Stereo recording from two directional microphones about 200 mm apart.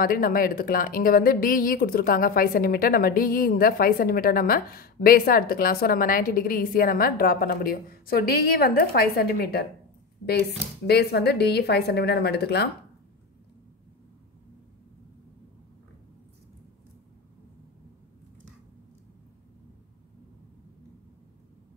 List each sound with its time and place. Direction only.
0.0 s speech: 45° left (ahead or behind)
10.9 s speech: 55° left (ahead or behind)